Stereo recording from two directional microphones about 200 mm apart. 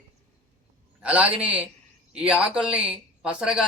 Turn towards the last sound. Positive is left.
turn(degrees=-5)  # may be behind; listen again after turning